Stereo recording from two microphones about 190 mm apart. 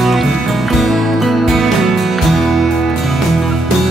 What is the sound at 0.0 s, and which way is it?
Music, centre (ahead or behind).